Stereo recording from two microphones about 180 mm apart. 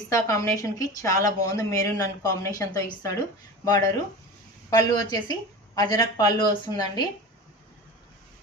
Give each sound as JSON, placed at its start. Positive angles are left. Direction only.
{"t": 0.1, "sound": "a woman's voice", "side_deg": 20}